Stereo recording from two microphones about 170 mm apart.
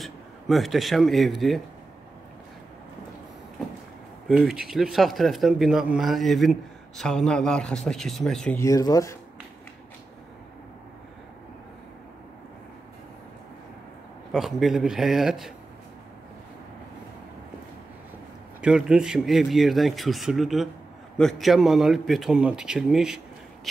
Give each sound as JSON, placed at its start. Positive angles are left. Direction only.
{"t": 0.0, "sound": "speech", "side_deg": 0}
{"t": 4.3, "sound": "speech", "side_deg": -5}
{"t": 8.5, "sound": "speech", "side_deg": 20}
{"t": 14.3, "sound": "speech", "side_deg": 0}
{"t": 18.6, "sound": "speech", "side_deg": -5}